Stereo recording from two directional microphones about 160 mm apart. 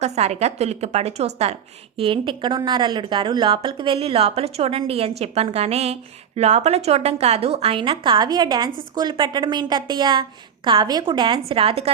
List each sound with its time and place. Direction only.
0.0 s a woman's voice: 45° right (ahead or behind)